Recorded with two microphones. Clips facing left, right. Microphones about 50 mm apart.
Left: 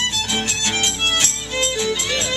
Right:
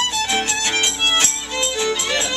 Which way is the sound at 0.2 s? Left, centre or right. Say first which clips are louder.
Right 2 dB; centre.